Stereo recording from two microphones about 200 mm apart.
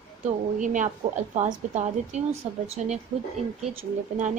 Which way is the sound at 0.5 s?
40° right (ahead or behind).